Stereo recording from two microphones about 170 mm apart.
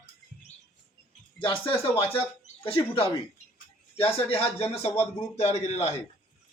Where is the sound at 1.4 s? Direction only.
30° left (ahead or behind).